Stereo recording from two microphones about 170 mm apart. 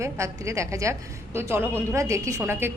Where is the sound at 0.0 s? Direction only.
15° right (ahead or behind).